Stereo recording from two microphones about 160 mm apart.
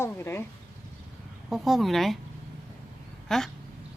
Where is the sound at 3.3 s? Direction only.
Centre (ahead or behind).